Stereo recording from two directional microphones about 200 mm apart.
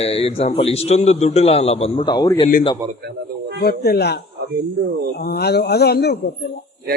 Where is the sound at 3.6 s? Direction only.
50° left (ahead or behind).